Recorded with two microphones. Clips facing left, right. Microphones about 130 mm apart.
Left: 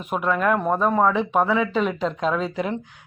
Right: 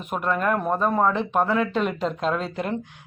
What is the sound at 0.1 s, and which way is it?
Speech, centre (ahead or behind).